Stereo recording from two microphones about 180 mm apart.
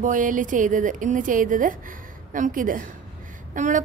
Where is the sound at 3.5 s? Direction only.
45° right (ahead or behind).